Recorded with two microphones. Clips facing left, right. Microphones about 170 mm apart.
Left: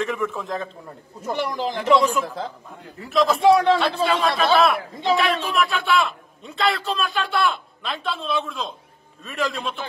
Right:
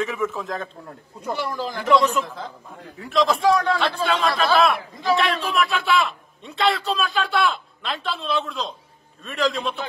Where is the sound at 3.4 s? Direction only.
25° left (ahead or behind).